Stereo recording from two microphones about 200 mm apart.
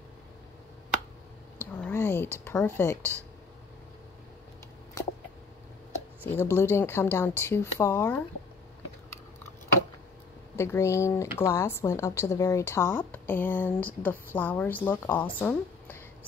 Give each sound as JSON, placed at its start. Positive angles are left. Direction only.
{"t": 1.8, "sound": "speech", "side_deg": 10}
{"t": 5.0, "sound": "a sound", "side_deg": 15}
{"t": 6.3, "sound": "speech", "side_deg": 10}
{"t": 10.5, "sound": "speech", "side_deg": 15}